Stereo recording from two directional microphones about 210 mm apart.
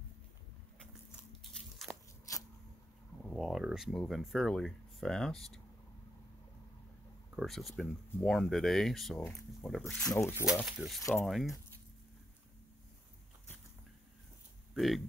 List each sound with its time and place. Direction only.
2.3 s a sound: 15° left (ahead or behind)
3.3 s speech: centre (ahead or behind)
7.3 s speech: centre (ahead or behind)
10.0 s speech: 15° left (ahead or behind)
10.3 s speech: 5° right (ahead or behind)
14.7 s a sound: centre (ahead or behind)